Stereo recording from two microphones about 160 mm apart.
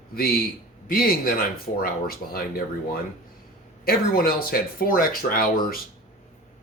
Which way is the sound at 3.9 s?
65° left (ahead or behind).